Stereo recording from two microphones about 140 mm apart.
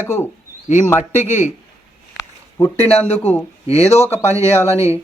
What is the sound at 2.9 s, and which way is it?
Speech, 50° left (ahead or behind).